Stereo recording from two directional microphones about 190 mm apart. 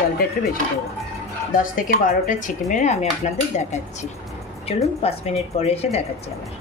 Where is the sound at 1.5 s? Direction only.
45° left (ahead or behind).